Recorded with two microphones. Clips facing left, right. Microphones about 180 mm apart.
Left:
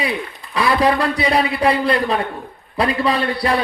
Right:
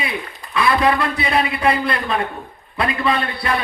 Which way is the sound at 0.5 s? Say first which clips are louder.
Left 1 dB; 35° left (ahead or behind).